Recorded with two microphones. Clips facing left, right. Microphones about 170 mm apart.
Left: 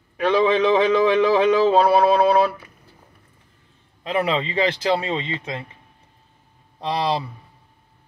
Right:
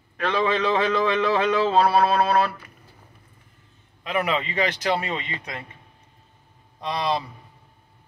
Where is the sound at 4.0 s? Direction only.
30° left (ahead or behind).